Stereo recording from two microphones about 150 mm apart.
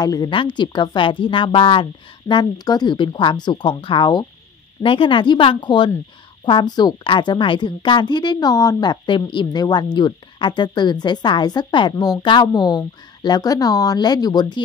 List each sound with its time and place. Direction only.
0.0 s a woman's voice: 25° left (ahead or behind)